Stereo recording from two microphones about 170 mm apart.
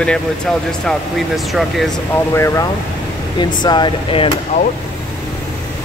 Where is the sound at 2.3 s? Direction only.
15° left (ahead or behind).